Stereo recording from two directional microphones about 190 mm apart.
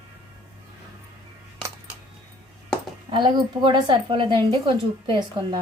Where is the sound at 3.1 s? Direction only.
25° right (ahead or behind).